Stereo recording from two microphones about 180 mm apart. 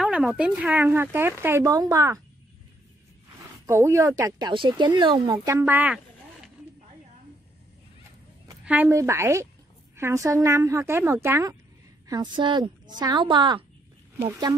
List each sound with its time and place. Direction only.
0.0 s speech: 5° right (ahead or behind)
3.6 s speech: 15° right (ahead or behind)
8.6 s speech: 10° right (ahead or behind)
12.1 s speech: 25° right (ahead or behind)
14.1 s speech: 15° right (ahead or behind)